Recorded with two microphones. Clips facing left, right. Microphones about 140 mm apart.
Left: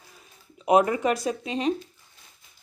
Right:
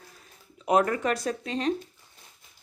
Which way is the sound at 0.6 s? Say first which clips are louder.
Left 3 dB; 15° left (ahead or behind).